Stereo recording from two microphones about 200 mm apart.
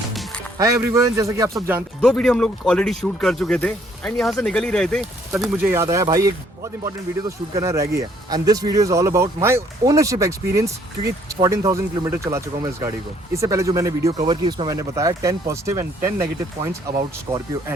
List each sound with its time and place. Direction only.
0.1 s music: centre (ahead or behind)
0.6 s speech: 15° right (ahead or behind)
2.0 s speech: 5° left (ahead or behind)
5.4 s speech: 10° right (ahead or behind)